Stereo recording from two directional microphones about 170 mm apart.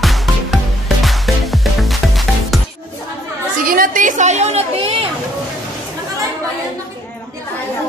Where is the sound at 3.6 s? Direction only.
55° right (ahead or behind); by 4.9 s 35° right (ahead or behind).